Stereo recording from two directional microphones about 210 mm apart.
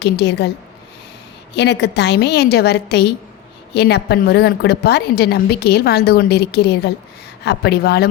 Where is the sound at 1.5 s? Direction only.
55° left (ahead or behind).